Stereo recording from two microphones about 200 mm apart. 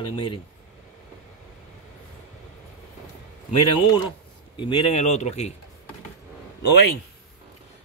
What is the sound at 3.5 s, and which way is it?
Speech, 30° left (ahead or behind).